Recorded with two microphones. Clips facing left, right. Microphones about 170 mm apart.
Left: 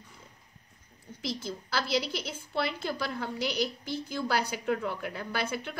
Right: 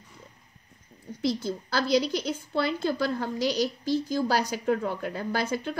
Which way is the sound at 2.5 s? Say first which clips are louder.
Right 4 dB; 45° right (ahead or behind).